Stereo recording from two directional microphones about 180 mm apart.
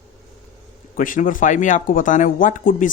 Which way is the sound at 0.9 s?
50° left (ahead or behind).